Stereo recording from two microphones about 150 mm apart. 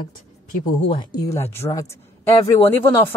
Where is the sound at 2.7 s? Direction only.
15° left (ahead or behind).